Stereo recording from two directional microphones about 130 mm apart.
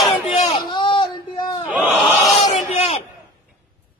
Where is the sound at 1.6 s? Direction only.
10° right (ahead or behind).